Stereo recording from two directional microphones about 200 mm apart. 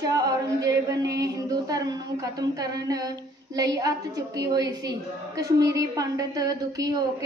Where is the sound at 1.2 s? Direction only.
15° right (ahead or behind).